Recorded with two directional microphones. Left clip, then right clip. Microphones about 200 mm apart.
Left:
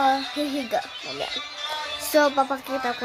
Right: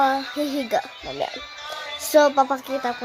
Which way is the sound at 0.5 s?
15° right (ahead or behind).